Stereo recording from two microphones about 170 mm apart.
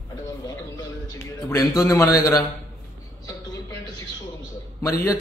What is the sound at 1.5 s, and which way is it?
Speech, 20° left (ahead or behind).